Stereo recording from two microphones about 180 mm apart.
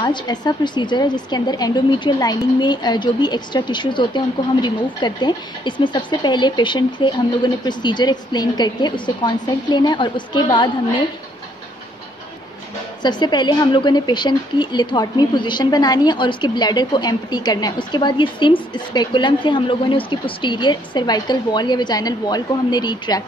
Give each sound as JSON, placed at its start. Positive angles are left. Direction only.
{"t": 0.0, "sound": "a woman's voice", "side_deg": 25}
{"t": 13.0, "sound": "a woman's voice", "side_deg": 25}